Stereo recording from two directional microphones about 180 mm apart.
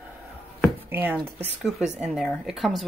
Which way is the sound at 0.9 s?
10° right (ahead or behind).